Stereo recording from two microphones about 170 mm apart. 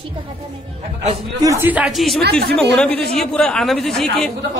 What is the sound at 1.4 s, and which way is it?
Speech, 15° right (ahead or behind).